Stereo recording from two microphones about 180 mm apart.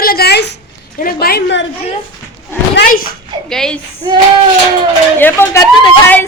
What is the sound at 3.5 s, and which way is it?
Speech, 5° left (ahead or behind).